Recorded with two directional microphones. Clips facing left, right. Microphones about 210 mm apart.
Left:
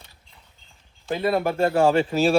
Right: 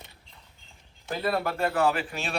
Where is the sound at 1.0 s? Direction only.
20° left (ahead or behind).